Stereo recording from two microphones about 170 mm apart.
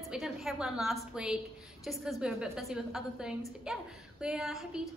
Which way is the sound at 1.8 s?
5° right (ahead or behind).